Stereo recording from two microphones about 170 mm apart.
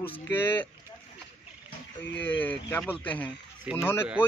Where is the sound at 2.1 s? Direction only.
10° left (ahead or behind).